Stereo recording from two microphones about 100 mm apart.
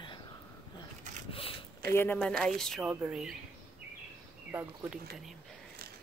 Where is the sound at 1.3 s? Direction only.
70° left (ahead or behind).